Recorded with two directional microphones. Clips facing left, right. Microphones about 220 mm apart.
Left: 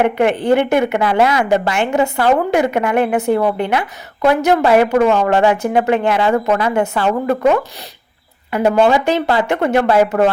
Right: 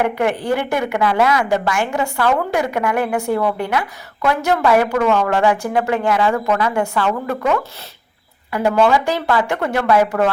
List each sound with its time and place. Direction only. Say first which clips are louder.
0.0 s a woman's voice: left 4 dB; 20° left (ahead or behind)